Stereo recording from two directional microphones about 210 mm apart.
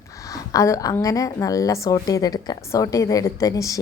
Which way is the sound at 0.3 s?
15° left (ahead or behind).